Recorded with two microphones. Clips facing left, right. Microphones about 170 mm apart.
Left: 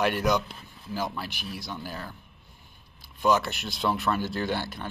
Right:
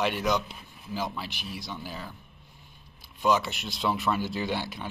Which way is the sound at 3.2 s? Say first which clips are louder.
Left 1 dB; centre (ahead or behind).